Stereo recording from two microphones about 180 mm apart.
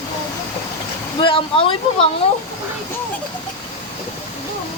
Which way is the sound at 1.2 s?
30° left (ahead or behind).